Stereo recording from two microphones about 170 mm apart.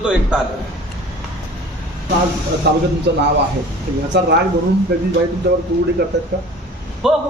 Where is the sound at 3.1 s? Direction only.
90° right.